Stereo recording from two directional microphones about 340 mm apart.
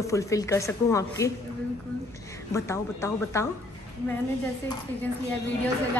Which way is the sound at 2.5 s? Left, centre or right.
Centre.